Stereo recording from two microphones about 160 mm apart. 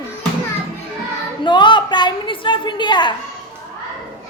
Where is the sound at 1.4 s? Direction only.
30° left (ahead or behind).